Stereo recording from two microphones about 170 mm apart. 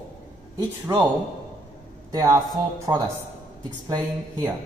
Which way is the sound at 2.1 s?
20° right (ahead or behind).